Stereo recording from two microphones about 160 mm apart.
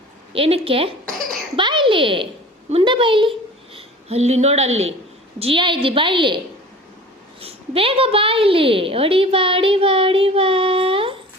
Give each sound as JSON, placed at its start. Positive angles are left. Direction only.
{"t": 0.3, "sound": "a woman's voice", "side_deg": -35}